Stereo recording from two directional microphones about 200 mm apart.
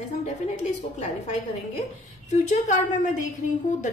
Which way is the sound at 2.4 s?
35° left (ahead or behind).